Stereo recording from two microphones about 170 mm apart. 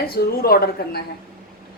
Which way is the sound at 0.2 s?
65° left (ahead or behind).